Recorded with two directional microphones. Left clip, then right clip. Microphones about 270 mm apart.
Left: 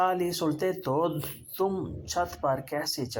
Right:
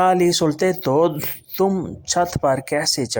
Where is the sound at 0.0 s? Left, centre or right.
Right.